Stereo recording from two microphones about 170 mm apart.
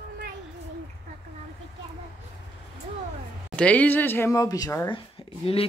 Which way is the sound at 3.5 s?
10° left (ahead or behind).